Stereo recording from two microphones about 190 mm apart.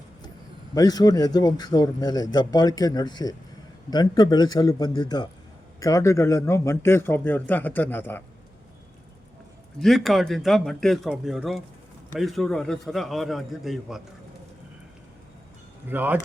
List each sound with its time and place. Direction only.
0.7 s a man's voice: 20° left (ahead or behind)
9.8 s speech: centre (ahead or behind)
15.9 s speech: 10° right (ahead or behind)